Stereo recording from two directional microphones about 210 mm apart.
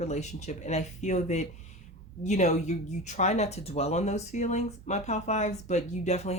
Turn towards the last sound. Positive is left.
turn(degrees=30)  # may be behind; listen again after turning